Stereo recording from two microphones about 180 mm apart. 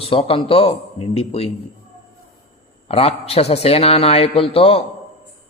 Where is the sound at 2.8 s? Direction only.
35° left (ahead or behind).